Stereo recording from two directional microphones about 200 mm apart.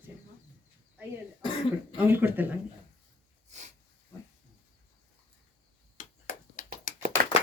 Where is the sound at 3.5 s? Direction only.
35° right (ahead or behind).